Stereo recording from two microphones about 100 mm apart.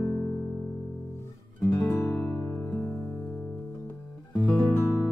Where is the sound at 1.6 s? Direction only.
20° left (ahead or behind).